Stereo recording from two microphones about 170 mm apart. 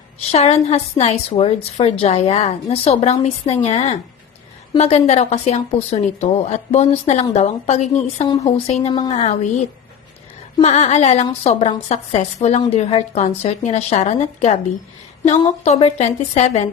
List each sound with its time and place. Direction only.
0.3 s a woman's voice: 40° left (ahead or behind)
15.6 s a woman's voice: 40° left (ahead or behind)